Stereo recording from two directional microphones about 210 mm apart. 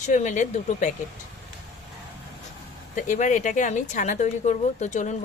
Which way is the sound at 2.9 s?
35° left (ahead or behind).